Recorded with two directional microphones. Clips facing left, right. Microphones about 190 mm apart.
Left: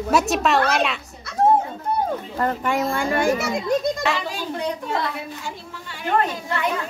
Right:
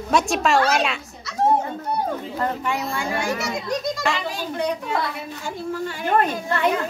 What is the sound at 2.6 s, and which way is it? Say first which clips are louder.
A child's voice: left 4 dB; 50° left (ahead or behind).